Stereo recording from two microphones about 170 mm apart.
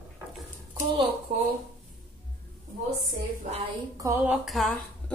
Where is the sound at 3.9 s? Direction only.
15° right (ahead or behind); by 5.1 s centre (ahead or behind).